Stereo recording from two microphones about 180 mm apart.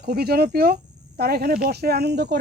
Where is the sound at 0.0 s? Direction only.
60° right (ahead or behind).